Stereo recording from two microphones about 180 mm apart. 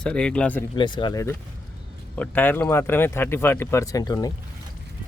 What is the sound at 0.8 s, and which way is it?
Speech, 25° left (ahead or behind).